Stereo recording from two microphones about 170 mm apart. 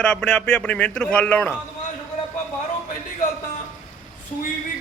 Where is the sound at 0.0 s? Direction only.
5° left (ahead or behind).